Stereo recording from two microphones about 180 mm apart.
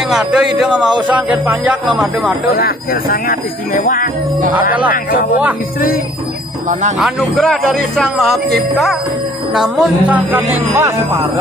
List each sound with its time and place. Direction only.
0.1 s speech: 5° right (ahead or behind)
2.5 s speech: 55° left (ahead or behind)
7.0 s speech: centre (ahead or behind)